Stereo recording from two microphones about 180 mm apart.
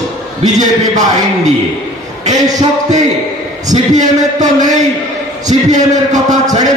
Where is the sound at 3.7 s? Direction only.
40° right (ahead or behind).